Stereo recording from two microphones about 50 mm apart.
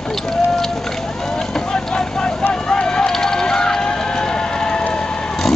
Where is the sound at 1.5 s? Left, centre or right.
Centre.